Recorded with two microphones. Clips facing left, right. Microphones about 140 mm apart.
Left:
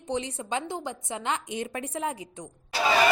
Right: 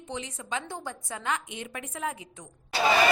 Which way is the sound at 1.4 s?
35° left (ahead or behind).